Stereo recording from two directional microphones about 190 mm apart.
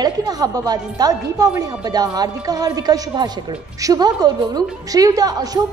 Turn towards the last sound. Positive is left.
turn(degrees=-20)  # may be behind; listen again after turning